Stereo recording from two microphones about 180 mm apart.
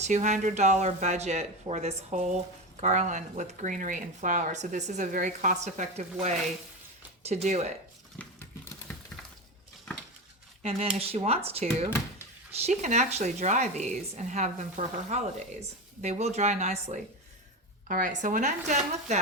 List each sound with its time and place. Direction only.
0.0 s speech: 40° right (ahead or behind)
8.2 s a sound: 10° left (ahead or behind)
10.6 s speech: 35° right (ahead or behind)
17.8 s speech: 50° right (ahead or behind)